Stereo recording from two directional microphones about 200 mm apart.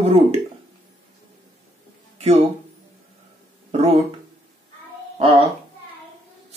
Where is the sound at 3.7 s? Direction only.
30° right (ahead or behind).